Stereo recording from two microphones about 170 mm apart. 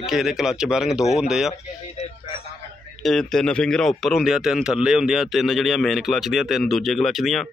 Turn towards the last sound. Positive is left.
turn(degrees=0)  # may be behind; listen again after turning